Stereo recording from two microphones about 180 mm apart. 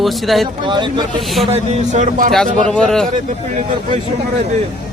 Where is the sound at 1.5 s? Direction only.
40° right (ahead or behind).